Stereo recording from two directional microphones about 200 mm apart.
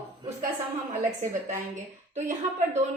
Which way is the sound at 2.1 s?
35° right (ahead or behind).